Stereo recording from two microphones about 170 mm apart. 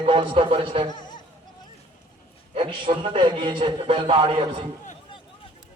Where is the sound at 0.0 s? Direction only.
30° right (ahead or behind).